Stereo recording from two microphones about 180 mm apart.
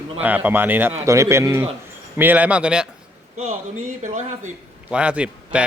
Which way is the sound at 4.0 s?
40° right (ahead or behind).